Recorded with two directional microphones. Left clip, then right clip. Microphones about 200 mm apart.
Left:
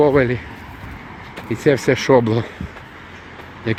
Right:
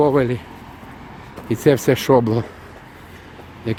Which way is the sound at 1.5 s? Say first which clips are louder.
Even; 15° right (ahead or behind).